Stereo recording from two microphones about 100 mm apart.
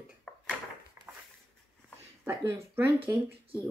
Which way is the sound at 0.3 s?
5° left (ahead or behind).